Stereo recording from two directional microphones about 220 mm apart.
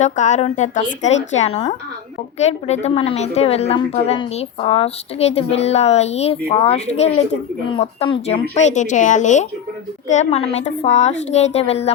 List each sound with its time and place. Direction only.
0.0 s a woman's voice: 35° left (ahead or behind)